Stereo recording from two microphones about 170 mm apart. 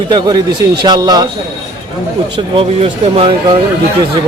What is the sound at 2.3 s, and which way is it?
Speech, 35° right (ahead or behind).